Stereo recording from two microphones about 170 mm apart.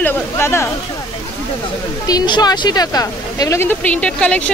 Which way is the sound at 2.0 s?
25° left (ahead or behind).